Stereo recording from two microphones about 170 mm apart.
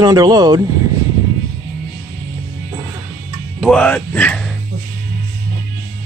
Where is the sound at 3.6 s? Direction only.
5° left (ahead or behind).